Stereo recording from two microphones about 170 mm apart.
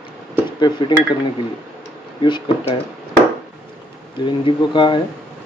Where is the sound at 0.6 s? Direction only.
25° left (ahead or behind).